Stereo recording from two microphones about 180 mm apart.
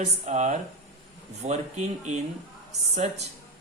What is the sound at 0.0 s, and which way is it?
Speech, 40° right (ahead or behind).